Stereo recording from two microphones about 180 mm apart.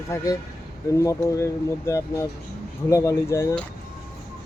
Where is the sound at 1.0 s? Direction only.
15° left (ahead or behind).